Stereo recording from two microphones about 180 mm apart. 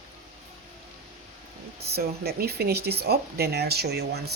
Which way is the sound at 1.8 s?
65° right (ahead or behind).